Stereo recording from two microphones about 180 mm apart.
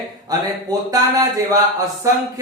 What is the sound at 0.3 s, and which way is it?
Speech, 20° right (ahead or behind).